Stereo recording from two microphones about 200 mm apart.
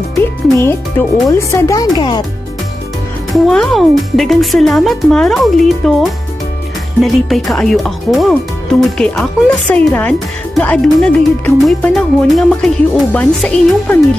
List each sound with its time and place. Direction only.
0.6 s speech: 15° left (ahead or behind)
3.4 s speech: centre (ahead or behind)
7.0 s speech: centre (ahead or behind)